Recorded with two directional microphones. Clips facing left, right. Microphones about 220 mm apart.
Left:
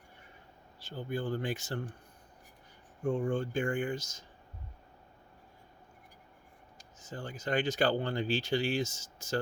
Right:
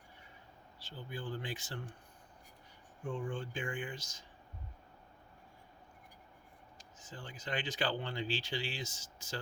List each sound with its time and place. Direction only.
0.9 s speech: 45° left (ahead or behind)
3.0 s speech: 40° left (ahead or behind)
7.0 s speech: 45° left (ahead or behind)